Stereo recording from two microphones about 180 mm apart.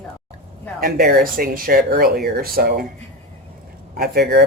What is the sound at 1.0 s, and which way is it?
Speech, 55° right (ahead or behind).